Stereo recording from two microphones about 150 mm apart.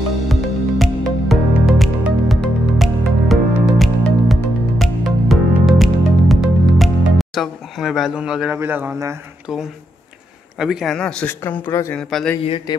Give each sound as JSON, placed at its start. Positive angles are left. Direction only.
{"t": 0.3, "sound": "music", "side_deg": 0}
{"t": 8.5, "sound": "speech", "side_deg": -15}
{"t": 9.5, "sound": "a man's voice", "side_deg": 0}
{"t": 12.0, "sound": "a man's voice", "side_deg": 5}
{"t": 12.4, "sound": "a man's voice", "side_deg": 35}